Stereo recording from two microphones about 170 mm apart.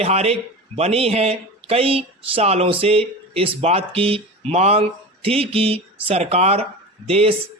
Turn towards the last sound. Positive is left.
turn(degrees=-35)  # may be behind; listen again after turning